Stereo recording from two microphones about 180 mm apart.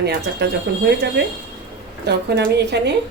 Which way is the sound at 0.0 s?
65° right (ahead or behind).